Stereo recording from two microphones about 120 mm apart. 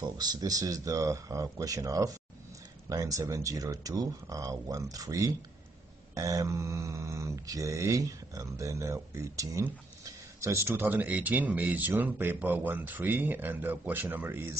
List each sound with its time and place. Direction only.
0.0 s speech: 35° right (ahead or behind)